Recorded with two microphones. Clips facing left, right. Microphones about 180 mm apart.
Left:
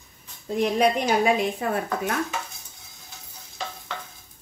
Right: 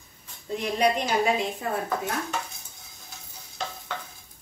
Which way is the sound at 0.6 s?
60° left (ahead or behind).